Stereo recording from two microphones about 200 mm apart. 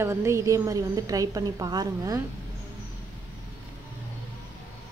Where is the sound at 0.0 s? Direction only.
15° right (ahead or behind).